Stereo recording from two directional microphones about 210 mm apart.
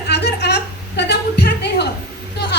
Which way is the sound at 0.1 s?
50° left (ahead or behind).